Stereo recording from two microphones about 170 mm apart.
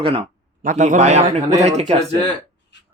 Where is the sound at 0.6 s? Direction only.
50° right (ahead or behind).